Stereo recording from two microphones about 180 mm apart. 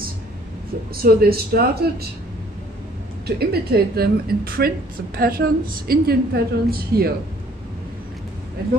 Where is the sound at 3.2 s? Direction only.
60° right (ahead or behind).